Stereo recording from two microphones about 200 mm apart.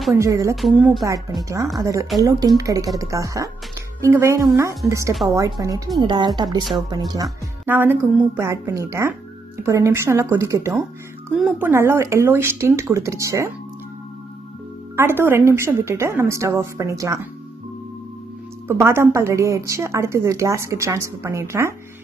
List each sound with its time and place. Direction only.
0.1 s a woman's voice: 15° right (ahead or behind)
7.2 s a woman's voice: 10° right (ahead or behind)
15.0 s a woman's voice: 10° right (ahead or behind)
18.7 s a woman's voice: 10° right (ahead or behind)